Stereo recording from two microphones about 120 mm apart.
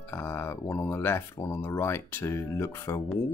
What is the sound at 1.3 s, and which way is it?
Speech, 30° left (ahead or behind).